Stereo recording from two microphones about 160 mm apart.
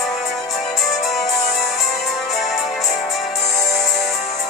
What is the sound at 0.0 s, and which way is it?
Music, centre (ahead or behind).